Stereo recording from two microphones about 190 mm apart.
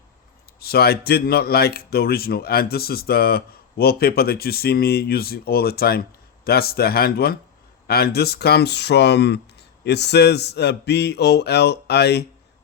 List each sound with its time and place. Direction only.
0.6 s speech: 55° left (ahead or behind)